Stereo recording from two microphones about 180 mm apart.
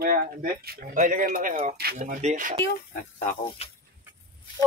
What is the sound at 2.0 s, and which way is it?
Speech, 45° right (ahead or behind).